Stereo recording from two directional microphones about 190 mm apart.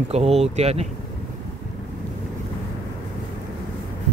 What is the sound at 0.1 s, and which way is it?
Speech, 35° right (ahead or behind).